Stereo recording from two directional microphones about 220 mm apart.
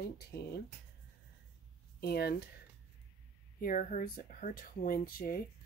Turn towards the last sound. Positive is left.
turn(degrees=40)  # may be behind; listen again after turning